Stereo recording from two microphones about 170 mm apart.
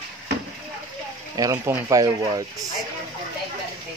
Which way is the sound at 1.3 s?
20° right (ahead or behind).